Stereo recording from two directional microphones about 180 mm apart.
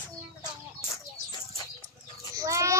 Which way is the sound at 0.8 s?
20° left (ahead or behind).